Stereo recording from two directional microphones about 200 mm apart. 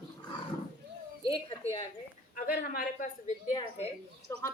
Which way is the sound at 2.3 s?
45° left (ahead or behind).